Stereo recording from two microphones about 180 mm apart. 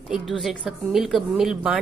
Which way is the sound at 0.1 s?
Centre (ahead or behind).